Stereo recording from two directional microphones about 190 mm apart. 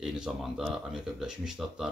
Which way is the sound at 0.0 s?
5° right (ahead or behind).